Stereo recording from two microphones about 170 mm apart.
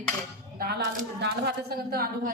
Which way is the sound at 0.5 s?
70° right (ahead or behind).